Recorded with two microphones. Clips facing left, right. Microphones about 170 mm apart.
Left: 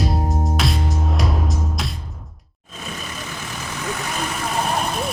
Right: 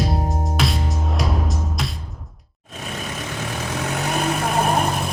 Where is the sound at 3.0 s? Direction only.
75° right (ahead or behind).